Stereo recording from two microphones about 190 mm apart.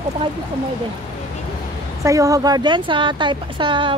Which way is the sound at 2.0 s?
15° right (ahead or behind).